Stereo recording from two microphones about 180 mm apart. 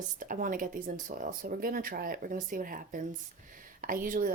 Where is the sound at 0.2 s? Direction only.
50° right (ahead or behind).